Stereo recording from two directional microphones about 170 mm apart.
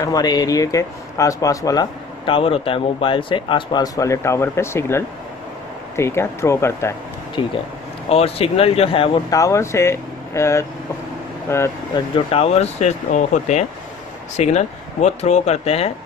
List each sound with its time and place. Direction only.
0.0 s speech: 25° left (ahead or behind)
7.4 s speech: 30° left (ahead or behind)
9.3 s speech: 20° left (ahead or behind)
12.3 s speech: 35° left (ahead or behind)